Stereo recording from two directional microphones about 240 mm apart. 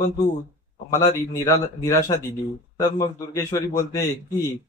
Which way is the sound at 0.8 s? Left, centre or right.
Centre.